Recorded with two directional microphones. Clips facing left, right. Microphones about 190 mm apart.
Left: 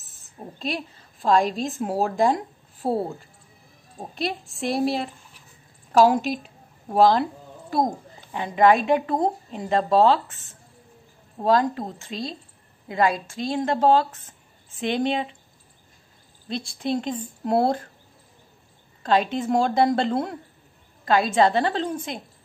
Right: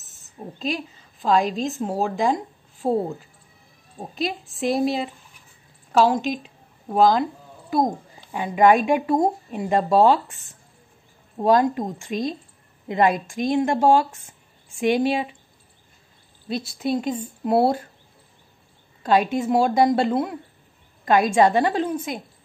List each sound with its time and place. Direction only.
0.6 s a woman's voice: centre (ahead or behind)
8.3 s a woman's voice: 10° right (ahead or behind)
16.4 s speech: 5° right (ahead or behind)
19.0 s speech: 10° right (ahead or behind)
21.0 s speech: 15° right (ahead or behind)